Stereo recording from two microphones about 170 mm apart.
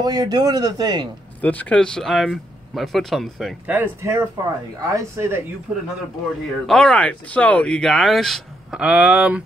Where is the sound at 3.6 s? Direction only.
10° right (ahead or behind).